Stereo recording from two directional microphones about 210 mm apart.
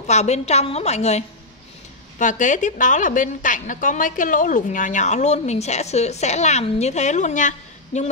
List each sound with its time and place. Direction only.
0.0 s a woman's voice: 30° left (ahead or behind)